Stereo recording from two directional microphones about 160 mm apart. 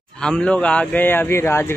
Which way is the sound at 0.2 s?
5° left (ahead or behind).